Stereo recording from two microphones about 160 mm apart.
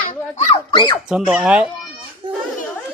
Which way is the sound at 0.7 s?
30° left (ahead or behind).